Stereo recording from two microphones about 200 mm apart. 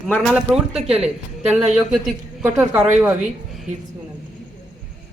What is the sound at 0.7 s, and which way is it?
Speech, 30° right (ahead or behind).